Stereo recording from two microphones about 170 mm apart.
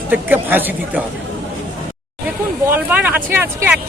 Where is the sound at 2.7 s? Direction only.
10° right (ahead or behind).